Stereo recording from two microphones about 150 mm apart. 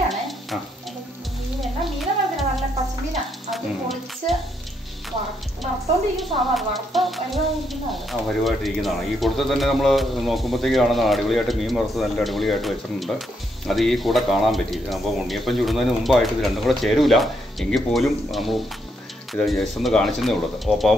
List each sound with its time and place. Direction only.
1.6 s a sound: centre (ahead or behind)
3.4 s music: centre (ahead or behind)
6.1 s a woman's voice: centre (ahead or behind)